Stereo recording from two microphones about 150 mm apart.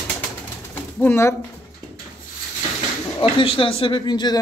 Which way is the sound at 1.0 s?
15° left (ahead or behind).